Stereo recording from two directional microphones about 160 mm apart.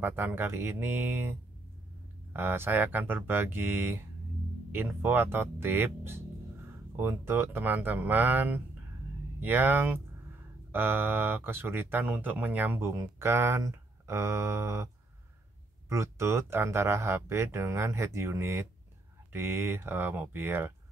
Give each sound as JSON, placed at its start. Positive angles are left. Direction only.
{"t": 0.0, "sound": "speech", "side_deg": -15}
{"t": 2.3, "sound": "speech", "side_deg": -15}
{"t": 15.9, "sound": "speech", "side_deg": -15}